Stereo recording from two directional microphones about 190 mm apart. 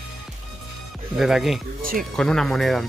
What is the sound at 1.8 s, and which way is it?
Music, 50° right (ahead or behind).